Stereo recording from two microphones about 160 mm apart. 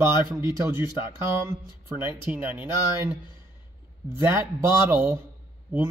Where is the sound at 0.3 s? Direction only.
20° right (ahead or behind).